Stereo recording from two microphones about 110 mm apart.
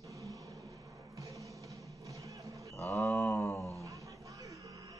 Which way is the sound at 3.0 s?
Centre (ahead or behind).